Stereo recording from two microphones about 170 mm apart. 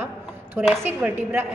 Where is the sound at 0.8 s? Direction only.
10° right (ahead or behind).